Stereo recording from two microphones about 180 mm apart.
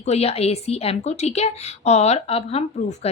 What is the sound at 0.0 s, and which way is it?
A woman's voice, 35° left (ahead or behind).